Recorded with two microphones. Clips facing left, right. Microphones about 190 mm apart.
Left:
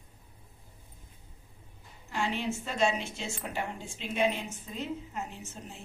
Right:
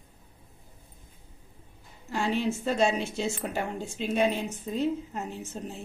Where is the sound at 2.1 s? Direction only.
40° right (ahead or behind).